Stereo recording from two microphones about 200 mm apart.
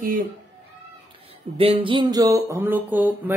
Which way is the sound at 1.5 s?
25° right (ahead or behind).